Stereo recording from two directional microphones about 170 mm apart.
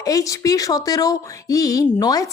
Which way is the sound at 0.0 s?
20° left (ahead or behind).